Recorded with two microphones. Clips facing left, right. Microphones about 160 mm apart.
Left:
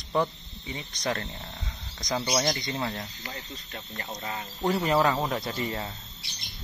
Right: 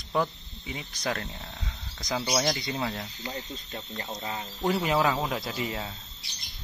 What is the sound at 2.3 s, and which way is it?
Speech, centre (ahead or behind).